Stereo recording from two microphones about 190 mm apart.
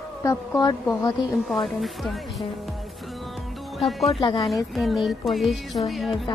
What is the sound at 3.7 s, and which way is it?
Speech, centre (ahead or behind).